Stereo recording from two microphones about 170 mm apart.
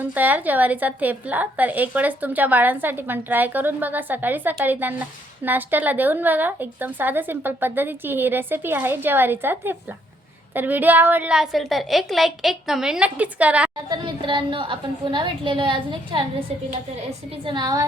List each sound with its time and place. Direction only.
0.0 s a woman's voice: 10° right (ahead or behind)
13.9 s a woman's voice: 25° right (ahead or behind)